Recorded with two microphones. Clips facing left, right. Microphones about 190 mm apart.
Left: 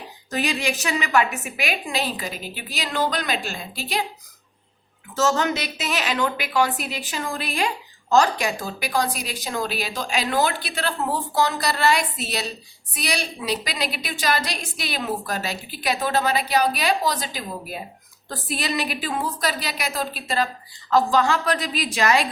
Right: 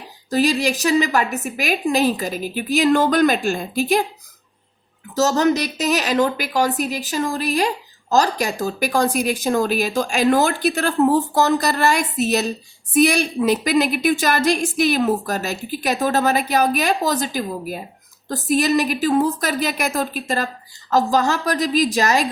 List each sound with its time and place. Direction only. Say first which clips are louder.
0.3 s a woman's voice: right 7 dB; 35° right (ahead or behind)
5.1 s a woman's voice: right 5 dB; 40° right (ahead or behind)